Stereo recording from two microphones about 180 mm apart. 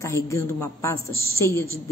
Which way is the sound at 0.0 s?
15° left (ahead or behind).